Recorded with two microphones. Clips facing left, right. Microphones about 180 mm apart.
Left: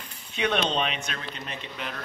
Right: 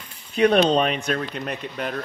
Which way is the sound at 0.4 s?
35° right (ahead or behind).